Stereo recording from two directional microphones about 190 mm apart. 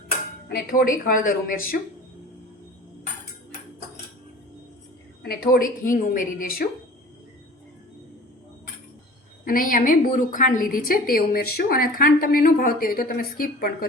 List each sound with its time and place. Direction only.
0.4 s a woman's voice: 50° left (ahead or behind)
5.2 s a woman's voice: 55° left (ahead or behind)
9.4 s a woman's voice: 50° left (ahead or behind)